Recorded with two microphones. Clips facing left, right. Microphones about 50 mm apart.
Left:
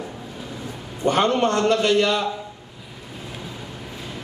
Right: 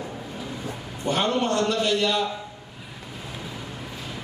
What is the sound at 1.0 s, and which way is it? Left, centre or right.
A man's voice, left.